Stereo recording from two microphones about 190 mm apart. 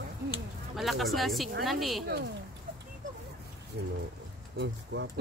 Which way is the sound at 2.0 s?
60° right (ahead or behind).